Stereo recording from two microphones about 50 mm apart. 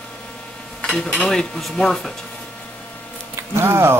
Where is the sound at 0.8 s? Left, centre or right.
Centre.